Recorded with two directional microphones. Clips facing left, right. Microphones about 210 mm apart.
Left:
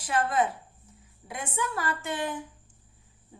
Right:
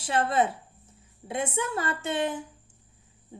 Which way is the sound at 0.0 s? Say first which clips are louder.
Right 1 dB; 30° right (ahead or behind).